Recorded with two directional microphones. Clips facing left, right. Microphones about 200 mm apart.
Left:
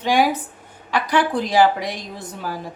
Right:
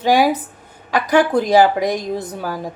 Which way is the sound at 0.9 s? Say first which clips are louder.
Right 5 dB; 45° right (ahead or behind).